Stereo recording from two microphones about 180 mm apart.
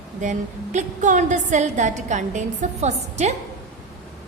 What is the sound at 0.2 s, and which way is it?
A woman's voice, 45° right (ahead or behind).